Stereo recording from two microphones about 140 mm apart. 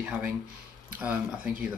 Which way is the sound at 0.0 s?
10° right (ahead or behind).